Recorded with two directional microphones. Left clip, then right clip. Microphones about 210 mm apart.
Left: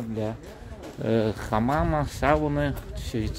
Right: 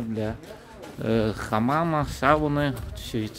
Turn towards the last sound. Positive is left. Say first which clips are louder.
# right 1 dB
turn(degrees=-10)  # may be behind; listen again after turning